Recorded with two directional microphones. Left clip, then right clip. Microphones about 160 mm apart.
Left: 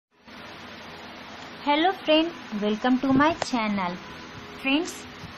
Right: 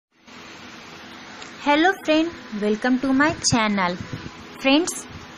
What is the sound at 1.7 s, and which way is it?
A woman's voice, 15° right (ahead or behind).